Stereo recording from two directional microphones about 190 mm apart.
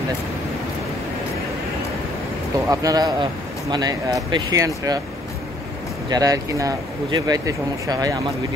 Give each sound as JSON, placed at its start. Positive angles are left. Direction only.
{"t": 2.7, "sound": "speech", "side_deg": -20}
{"t": 6.0, "sound": "speech", "side_deg": -20}